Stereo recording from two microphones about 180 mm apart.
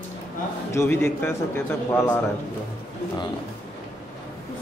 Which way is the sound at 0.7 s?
15° left (ahead or behind).